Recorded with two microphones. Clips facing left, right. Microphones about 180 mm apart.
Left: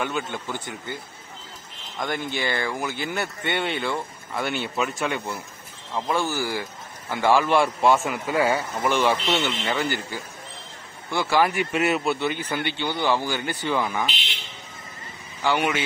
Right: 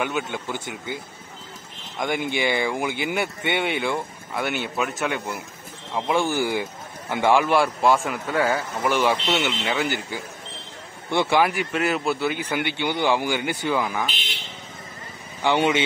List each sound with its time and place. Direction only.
0.0 s speech: 10° right (ahead or behind)
2.0 s speech: 15° right (ahead or behind)
7.5 s speech: centre (ahead or behind)
8.8 s speech: 10° right (ahead or behind)
9.1 s speech: 5° left (ahead or behind)
9.4 s speech: 10° right (ahead or behind)
11.4 s speech: centre (ahead or behind)
15.4 s speech: 25° right (ahead or behind)